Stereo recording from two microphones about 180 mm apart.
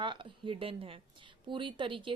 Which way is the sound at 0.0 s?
25° right (ahead or behind).